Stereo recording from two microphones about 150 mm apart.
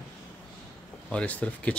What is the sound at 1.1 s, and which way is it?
Speech, 10° left (ahead or behind).